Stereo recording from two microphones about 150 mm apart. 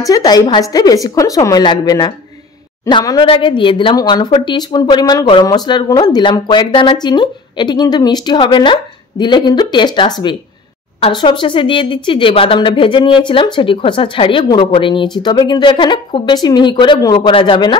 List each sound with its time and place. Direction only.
0.0 s speech: 25° left (ahead or behind)